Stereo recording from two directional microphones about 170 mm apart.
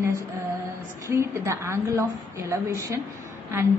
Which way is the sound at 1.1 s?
15° right (ahead or behind).